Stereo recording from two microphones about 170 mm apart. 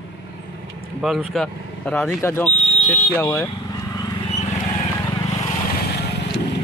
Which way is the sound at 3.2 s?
15° left (ahead or behind).